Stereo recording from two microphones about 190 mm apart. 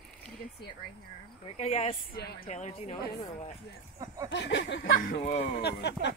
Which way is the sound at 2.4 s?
35° left (ahead or behind).